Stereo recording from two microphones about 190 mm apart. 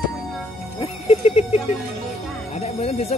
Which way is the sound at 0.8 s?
35° left (ahead or behind).